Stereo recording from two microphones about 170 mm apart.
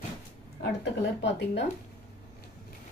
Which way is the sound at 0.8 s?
90° left.